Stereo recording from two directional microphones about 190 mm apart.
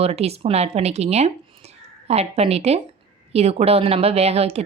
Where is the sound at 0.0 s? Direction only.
35° right (ahead or behind).